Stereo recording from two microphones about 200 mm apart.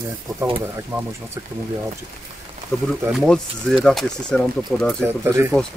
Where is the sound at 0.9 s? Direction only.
15° right (ahead or behind).